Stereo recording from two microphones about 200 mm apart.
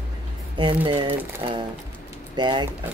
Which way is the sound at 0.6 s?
25° right (ahead or behind).